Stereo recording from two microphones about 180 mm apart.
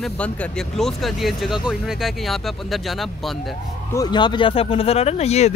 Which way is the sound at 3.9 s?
25° left (ahead or behind).